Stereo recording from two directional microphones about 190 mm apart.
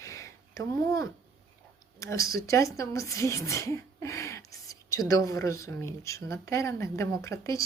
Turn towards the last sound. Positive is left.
turn(degrees=15)  # may be behind; listen again after turning